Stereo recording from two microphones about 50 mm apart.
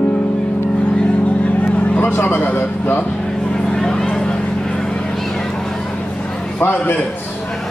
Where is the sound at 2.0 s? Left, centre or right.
Left.